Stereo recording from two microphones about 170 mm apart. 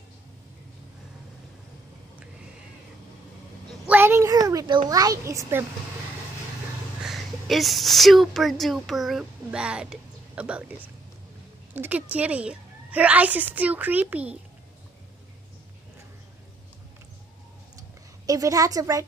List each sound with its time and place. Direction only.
3.8 s a sound: 10° right (ahead or behind)
7.1 s speech: centre (ahead or behind)
11.7 s a woman's voice: 10° right (ahead or behind)
18.2 s a woman's voice: 20° right (ahead or behind)